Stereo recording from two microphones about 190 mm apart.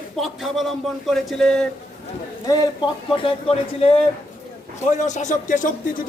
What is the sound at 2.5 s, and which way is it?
Speech, 20° left (ahead or behind).